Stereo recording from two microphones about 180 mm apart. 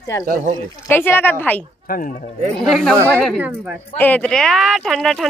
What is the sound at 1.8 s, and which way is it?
Speech, 50° left (ahead or behind).